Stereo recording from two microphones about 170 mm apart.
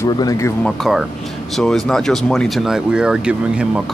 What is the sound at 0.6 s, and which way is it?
Speech, centre (ahead or behind).